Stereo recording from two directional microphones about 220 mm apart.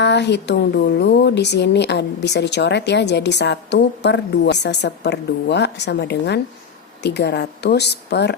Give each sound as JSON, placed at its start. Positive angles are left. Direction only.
{"t": 0.0, "sound": "speech", "side_deg": 50}